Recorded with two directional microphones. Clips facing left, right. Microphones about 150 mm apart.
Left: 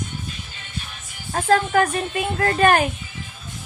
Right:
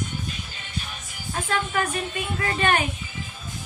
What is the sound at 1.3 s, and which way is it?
A woman's voice, 45° left (ahead or behind).